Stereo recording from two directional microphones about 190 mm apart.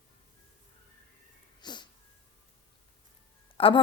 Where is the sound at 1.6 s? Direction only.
25° left (ahead or behind).